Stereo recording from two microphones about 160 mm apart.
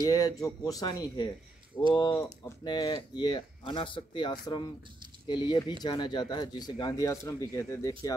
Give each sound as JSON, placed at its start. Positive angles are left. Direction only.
{"t": 0.0, "sound": "speech", "side_deg": 20}